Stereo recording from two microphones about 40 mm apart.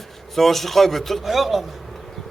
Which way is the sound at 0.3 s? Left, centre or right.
Centre.